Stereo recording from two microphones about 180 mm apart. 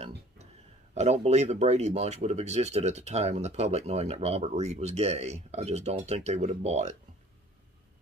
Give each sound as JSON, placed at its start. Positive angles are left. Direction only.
{"t": 0.9, "sound": "speech", "side_deg": -40}